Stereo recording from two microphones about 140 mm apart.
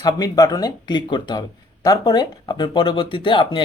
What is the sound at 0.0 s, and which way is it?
Speech, 30° left (ahead or behind).